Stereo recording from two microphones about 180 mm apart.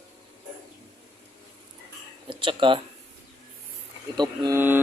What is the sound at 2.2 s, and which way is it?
Speech, 25° right (ahead or behind).